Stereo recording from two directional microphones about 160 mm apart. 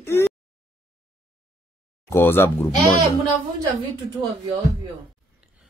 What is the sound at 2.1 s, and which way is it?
Speech, 15° left (ahead or behind).